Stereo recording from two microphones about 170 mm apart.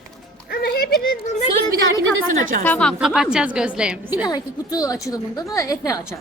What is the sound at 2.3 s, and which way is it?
Speech, 50° right (ahead or behind).